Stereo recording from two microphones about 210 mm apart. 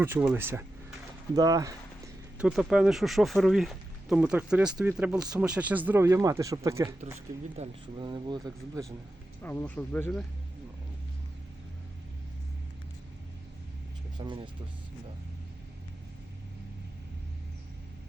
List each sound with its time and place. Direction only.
0.0 s speech: 10° right (ahead or behind)
2.4 s speech: centre (ahead or behind)
7.5 s speech: 30° right (ahead or behind)
9.4 s speech: 10° left (ahead or behind)
14.2 s speech: 20° right (ahead or behind)